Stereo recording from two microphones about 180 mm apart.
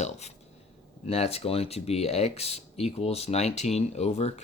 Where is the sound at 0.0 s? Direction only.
40° left (ahead or behind).